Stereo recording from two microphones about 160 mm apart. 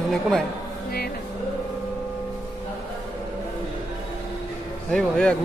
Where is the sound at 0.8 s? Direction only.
75° left (ahead or behind).